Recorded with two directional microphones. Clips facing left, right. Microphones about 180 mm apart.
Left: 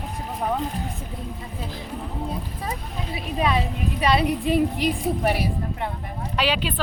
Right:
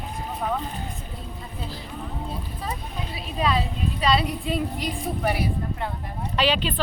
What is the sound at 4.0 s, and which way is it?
Speech, 20° left (ahead or behind).